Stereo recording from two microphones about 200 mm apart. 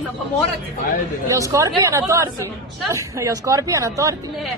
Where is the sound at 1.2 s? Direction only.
15° right (ahead or behind).